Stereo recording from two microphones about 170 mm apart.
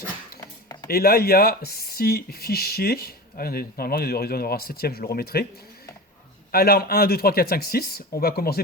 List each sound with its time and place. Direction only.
0.3 s a sound: 20° left (ahead or behind)
0.9 s speech: 65° left (ahead or behind)
6.5 s speech: 65° left (ahead or behind)